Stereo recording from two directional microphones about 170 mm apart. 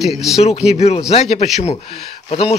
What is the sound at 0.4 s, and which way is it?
Speech, 40° left (ahead or behind).